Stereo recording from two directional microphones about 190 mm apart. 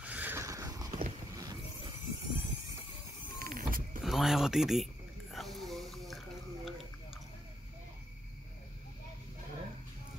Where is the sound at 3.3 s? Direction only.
50° right (ahead or behind).